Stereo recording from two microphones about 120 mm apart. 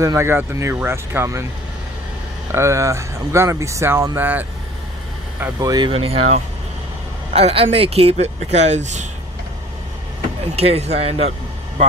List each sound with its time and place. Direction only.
0.0 s speech: 25° right (ahead or behind)
2.5 s speech: 25° right (ahead or behind)
5.6 s speech: 30° right (ahead or behind)
5.9 s speech: 50° right (ahead or behind); by 9.0 s 75° right (ahead or behind)
10.5 s speech: 60° right (ahead or behind)